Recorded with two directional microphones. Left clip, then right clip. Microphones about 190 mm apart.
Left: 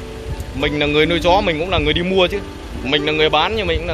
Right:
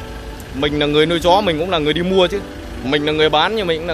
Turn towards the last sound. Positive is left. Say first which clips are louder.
# right 1 dB
turn(degrees=-20)  # may be behind; listen again after turning